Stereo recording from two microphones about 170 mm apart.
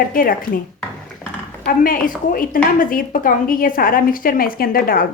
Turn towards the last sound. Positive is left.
turn(degrees=60)  # may be behind; listen again after turning